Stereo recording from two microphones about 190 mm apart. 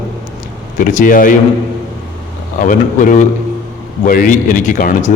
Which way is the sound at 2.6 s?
45° left (ahead or behind).